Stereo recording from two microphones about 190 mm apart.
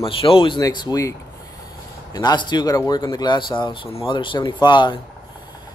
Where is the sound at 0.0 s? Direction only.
30° left (ahead or behind).